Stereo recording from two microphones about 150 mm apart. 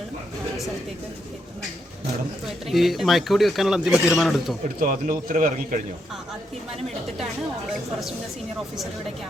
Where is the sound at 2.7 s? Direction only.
Centre (ahead or behind).